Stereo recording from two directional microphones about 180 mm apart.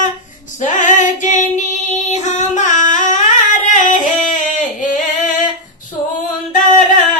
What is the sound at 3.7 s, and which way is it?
Yodeling, 45° left (ahead or behind).